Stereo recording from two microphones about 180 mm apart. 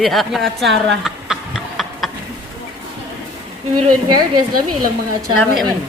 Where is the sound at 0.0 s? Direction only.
Centre (ahead or behind).